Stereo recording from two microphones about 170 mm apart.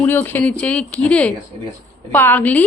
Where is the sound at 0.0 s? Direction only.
10° left (ahead or behind).